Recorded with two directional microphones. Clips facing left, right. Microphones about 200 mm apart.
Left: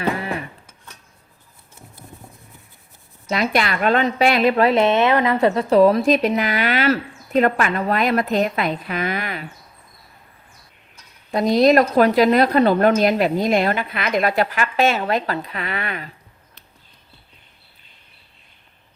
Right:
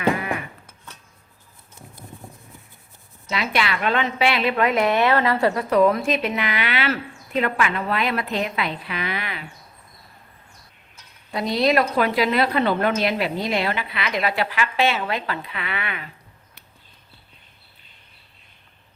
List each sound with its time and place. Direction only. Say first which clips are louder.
0.2 s a sound: left 1 dB; 30° left (ahead or behind)
3.2 s a woman's voice: left 4 dB; 45° left (ahead or behind)
11.3 s a woman's voice: left 6 dB; 45° left (ahead or behind)